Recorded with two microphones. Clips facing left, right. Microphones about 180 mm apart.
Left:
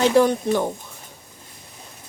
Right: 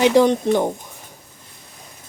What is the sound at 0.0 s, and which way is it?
Speech, 20° right (ahead or behind).